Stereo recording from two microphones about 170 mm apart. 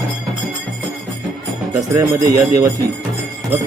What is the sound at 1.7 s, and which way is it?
Speech, 20° right (ahead or behind).